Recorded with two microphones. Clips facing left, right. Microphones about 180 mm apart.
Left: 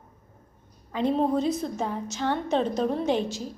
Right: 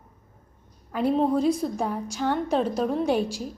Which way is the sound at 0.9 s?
5° right (ahead or behind).